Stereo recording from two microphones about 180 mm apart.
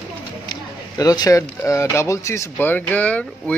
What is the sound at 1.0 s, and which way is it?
Speech, 20° left (ahead or behind).